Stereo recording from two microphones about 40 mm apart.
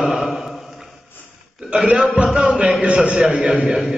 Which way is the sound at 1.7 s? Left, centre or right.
Right.